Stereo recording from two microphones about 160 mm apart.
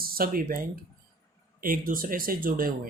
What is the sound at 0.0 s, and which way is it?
Speech, 65° right (ahead or behind).